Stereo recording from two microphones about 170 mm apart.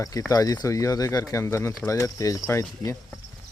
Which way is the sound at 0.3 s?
20° left (ahead or behind).